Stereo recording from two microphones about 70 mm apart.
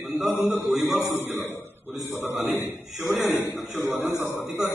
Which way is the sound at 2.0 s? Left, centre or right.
Left.